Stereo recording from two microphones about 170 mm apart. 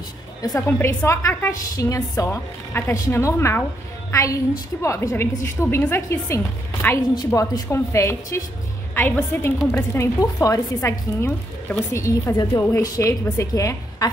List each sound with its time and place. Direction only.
0.7 s a woman's voice: 15° left (ahead or behind)